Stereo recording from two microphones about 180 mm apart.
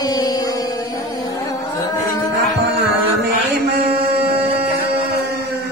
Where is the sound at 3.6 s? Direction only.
65° right (ahead or behind).